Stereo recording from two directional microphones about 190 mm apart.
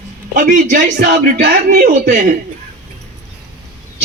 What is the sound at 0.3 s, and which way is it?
A man's voice, 45° right (ahead or behind).